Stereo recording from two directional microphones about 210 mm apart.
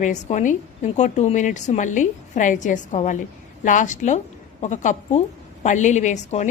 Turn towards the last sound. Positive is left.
turn(degrees=35)  # may be behind; listen again after turning